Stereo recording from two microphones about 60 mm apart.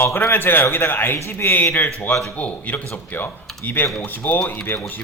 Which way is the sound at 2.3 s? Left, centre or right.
Left.